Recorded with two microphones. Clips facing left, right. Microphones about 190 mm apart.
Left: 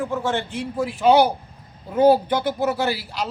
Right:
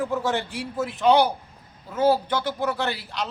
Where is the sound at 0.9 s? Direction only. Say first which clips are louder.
Left 3 dB; 5° left (ahead or behind).